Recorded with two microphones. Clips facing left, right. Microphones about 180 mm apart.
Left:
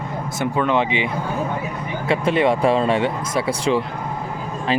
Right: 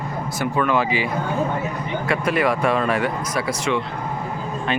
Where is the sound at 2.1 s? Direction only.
25° left (ahead or behind).